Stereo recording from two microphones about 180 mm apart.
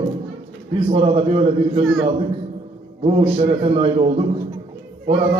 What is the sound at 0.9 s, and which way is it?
Speech, 30° right (ahead or behind).